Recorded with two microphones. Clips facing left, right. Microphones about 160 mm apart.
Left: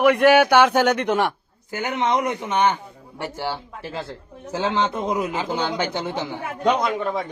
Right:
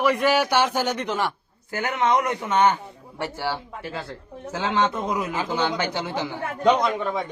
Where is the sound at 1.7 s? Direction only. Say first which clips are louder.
Even; 20° left (ahead or behind).